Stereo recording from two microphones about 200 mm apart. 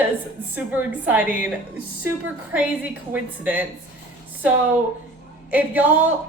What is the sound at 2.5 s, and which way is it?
A woman's voice, 5° right (ahead or behind).